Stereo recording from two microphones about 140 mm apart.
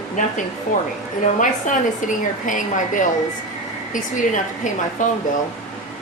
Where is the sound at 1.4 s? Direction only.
65° left (ahead or behind).